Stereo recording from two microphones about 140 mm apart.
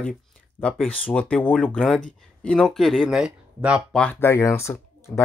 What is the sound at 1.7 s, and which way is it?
Speech, 5° right (ahead or behind).